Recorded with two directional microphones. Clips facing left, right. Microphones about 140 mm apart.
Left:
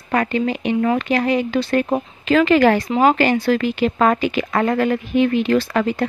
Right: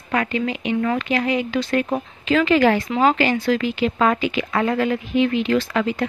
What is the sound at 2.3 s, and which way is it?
A woman's voice, 45° left (ahead or behind).